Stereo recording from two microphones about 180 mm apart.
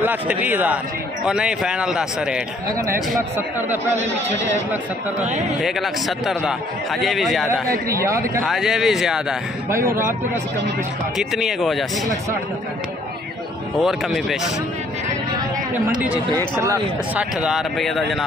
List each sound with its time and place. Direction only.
0.0 s a man's voice: 10° right (ahead or behind)
5.6 s a man's voice: centre (ahead or behind)
7.9 s a man's voice: 15° right (ahead or behind)
8.5 s a man's voice: centre (ahead or behind)
9.7 s a man's voice: 15° right (ahead or behind)
11.1 s a man's voice: centre (ahead or behind)
13.7 s a man's voice: centre (ahead or behind)
16.3 s a man's voice: 15° right (ahead or behind); by 18.2 s centre (ahead or behind)